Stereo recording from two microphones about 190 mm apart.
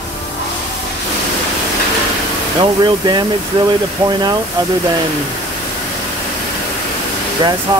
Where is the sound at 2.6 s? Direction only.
25° right (ahead or behind).